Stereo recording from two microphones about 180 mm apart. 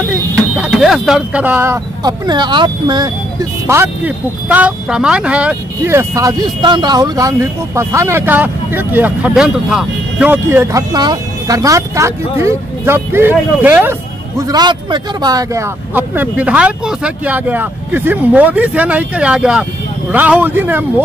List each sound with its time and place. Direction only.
0.0 s speech: 5° right (ahead or behind)
14.5 s speech: 25° right (ahead or behind)